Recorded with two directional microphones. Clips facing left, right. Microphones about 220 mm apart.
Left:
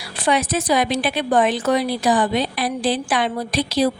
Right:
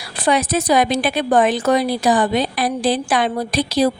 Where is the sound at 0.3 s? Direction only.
40° right (ahead or behind).